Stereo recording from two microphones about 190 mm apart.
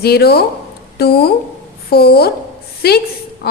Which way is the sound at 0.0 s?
55° left (ahead or behind).